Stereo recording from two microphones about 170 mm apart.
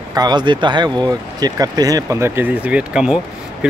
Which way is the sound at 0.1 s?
25° right (ahead or behind).